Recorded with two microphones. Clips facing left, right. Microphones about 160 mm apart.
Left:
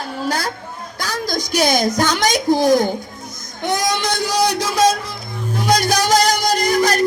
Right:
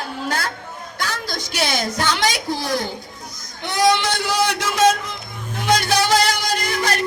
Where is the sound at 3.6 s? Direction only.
45° left (ahead or behind).